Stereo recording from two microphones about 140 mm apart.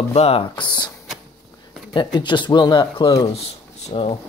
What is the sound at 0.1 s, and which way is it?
Speech, 45° left (ahead or behind).